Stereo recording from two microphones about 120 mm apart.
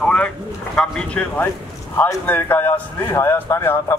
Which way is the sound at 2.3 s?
15° left (ahead or behind).